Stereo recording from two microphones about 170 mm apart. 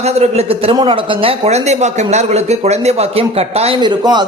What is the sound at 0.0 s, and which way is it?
A man's voice, 40° right (ahead or behind).